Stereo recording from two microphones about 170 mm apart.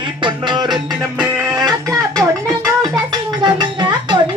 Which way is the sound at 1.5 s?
20° right (ahead or behind).